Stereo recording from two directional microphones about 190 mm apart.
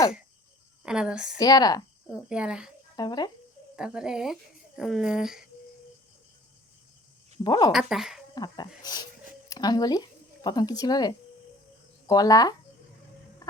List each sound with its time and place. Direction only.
0.8 s speech: 5° right (ahead or behind)
1.4 s speech: 20° left (ahead or behind)
2.1 s speech: 5° right (ahead or behind)
2.9 s speech: 20° left (ahead or behind)
3.8 s speech: 5° right (ahead or behind)
7.4 s speech: 25° left (ahead or behind)
7.7 s speech: 5° right (ahead or behind)
8.4 s speech: 20° left (ahead or behind)